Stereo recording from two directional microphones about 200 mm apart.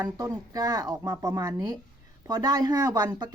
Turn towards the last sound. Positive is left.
turn(degrees=-20)  # may be behind; listen again after turning